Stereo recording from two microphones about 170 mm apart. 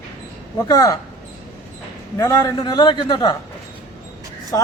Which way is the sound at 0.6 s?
20° left (ahead or behind).